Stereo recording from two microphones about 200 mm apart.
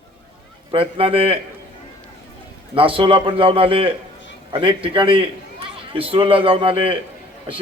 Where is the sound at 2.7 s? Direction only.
25° right (ahead or behind).